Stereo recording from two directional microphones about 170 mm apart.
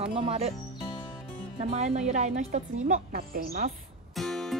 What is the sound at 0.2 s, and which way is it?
Speech, 35° right (ahead or behind).